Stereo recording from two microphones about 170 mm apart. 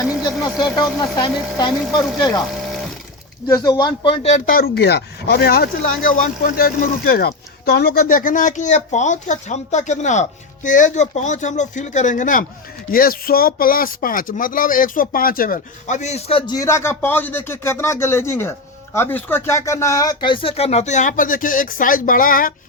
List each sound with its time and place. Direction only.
0.0 s a sound: centre (ahead or behind)
1.2 s speech: 25° left (ahead or behind)
1.8 s speech: centre (ahead or behind)
2.4 s printer: centre (ahead or behind)
3.4 s speech: 25° left (ahead or behind); by 4.5 s 40° left (ahead or behind)
4.5 s speech: 65° left (ahead or behind); by 16.4 s 40° left (ahead or behind)
16.5 s speech: 20° left (ahead or behind); by 22.5 s 55° left (ahead or behind)